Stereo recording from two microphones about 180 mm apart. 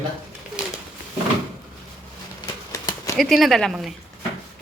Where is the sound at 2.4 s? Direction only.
20° left (ahead or behind).